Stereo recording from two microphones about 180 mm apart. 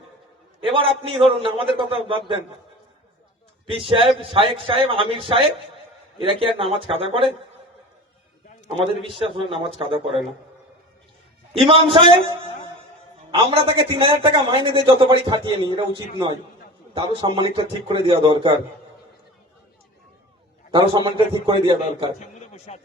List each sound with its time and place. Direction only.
0.6 s a man's voice: 30° right (ahead or behind)
3.7 s a man's voice: 30° right (ahead or behind)
8.7 s a man's voice: 30° right (ahead or behind)
11.5 s a man's voice: 30° right (ahead or behind)
13.3 s a man's voice: 30° right (ahead or behind)
16.9 s a man's voice: 30° right (ahead or behind)
20.7 s a man's voice: 25° right (ahead or behind)
22.4 s a sound: 35° left (ahead or behind)